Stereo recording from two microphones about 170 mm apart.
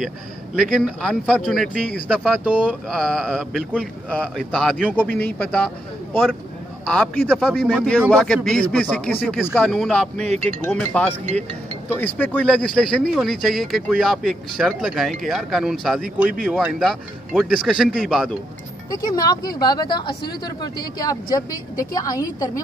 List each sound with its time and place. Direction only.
0.6 s speech: centre (ahead or behind)
2.4 s speech: 10° right (ahead or behind)
2.9 s speech: 5° left (ahead or behind)
4.9 s speech: 10° left (ahead or behind)
6.9 s speech: 5° left (ahead or behind)
18.9 s speech: 20° left (ahead or behind)